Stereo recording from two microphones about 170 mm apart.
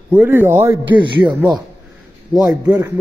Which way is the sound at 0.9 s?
30° right (ahead or behind).